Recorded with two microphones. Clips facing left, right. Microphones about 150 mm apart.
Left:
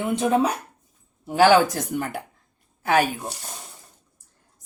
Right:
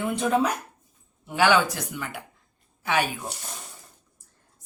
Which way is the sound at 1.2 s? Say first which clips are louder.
Left 5 dB; 40° left (ahead or behind).